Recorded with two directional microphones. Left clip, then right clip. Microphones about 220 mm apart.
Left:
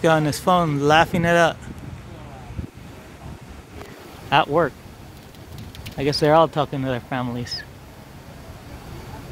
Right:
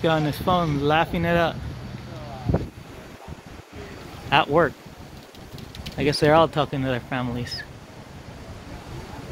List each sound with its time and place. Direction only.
0.0 s speech: 20° left (ahead or behind)
4.3 s speech: 15° left (ahead or behind)
5.9 s speech: 15° left (ahead or behind)